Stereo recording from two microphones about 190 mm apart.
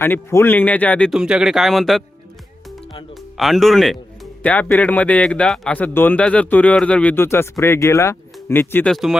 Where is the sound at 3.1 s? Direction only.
Centre (ahead or behind).